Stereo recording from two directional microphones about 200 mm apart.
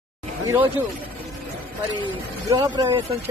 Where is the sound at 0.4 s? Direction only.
10° right (ahead or behind).